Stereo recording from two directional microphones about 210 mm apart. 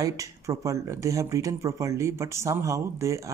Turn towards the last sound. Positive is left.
turn(degrees=-15)  # may be behind; listen again after turning